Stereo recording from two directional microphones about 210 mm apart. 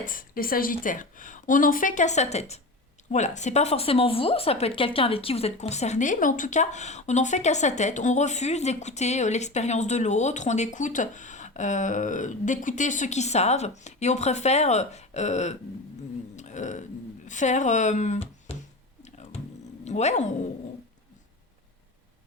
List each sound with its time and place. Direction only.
0.0 s a woman's voice: 40° left (ahead or behind)
19.0 s a sound: 30° left (ahead or behind)
19.8 s speech: 30° left (ahead or behind)